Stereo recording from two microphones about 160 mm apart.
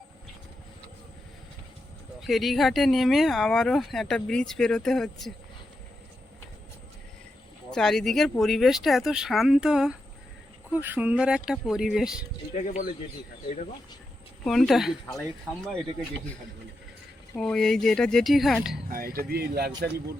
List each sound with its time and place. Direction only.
2.2 s speech: centre (ahead or behind)
7.7 s speech: 5° left (ahead or behind)
12.5 s speech: 55° left (ahead or behind)
14.4 s speech: centre (ahead or behind)
17.3 s speech: 5° left (ahead or behind)
18.9 s speech: 65° right (ahead or behind)